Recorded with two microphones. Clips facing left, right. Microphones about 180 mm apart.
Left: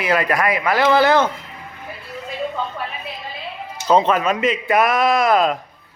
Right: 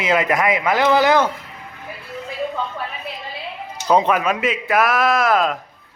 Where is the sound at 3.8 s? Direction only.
10° right (ahead or behind).